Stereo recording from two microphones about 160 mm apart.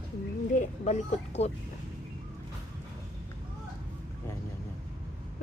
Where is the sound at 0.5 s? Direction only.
45° left (ahead or behind).